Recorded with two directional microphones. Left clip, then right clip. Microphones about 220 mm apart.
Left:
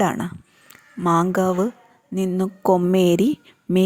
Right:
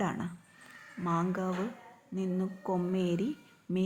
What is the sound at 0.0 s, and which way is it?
A woman's voice, 45° left (ahead or behind).